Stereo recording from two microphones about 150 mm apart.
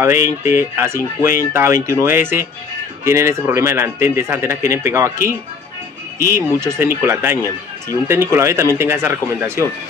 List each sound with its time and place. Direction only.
0.0 s speech: 20° right (ahead or behind)